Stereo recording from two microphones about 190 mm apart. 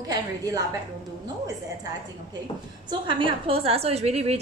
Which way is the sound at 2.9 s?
25° right (ahead or behind).